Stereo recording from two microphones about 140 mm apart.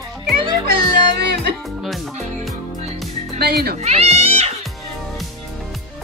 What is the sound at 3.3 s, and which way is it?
Speech, 90° right.